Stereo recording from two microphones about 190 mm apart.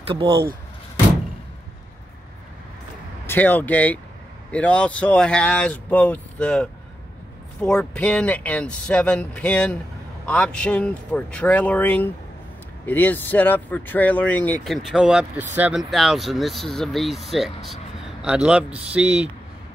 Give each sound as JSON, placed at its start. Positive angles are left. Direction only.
{"t": 0.0, "sound": "speech", "side_deg": -30}
{"t": 3.3, "sound": "speech", "side_deg": 10}